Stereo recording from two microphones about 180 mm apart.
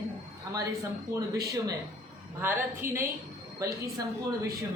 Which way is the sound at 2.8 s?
15° right (ahead or behind).